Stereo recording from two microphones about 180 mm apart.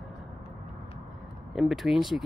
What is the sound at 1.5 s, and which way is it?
Speech, centre (ahead or behind).